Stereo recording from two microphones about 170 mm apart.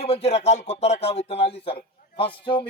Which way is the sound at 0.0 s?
35° left (ahead or behind).